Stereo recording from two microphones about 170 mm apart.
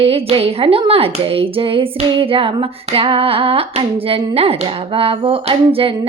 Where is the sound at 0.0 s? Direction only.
35° right (ahead or behind).